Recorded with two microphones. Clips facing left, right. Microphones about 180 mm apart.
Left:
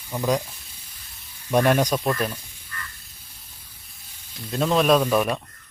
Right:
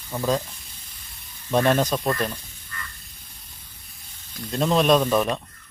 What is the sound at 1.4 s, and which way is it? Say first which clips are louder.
Speech: left 1 dB; 10° left (ahead or behind).